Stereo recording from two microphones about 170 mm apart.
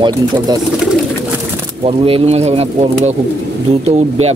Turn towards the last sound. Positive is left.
turn(degrees=-35)  # may be behind; listen again after turning